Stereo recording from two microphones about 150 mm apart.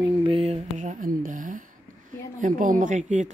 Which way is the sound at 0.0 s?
35° right (ahead or behind).